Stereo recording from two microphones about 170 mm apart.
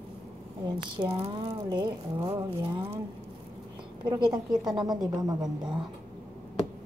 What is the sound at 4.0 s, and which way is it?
A woman's voice, 25° right (ahead or behind).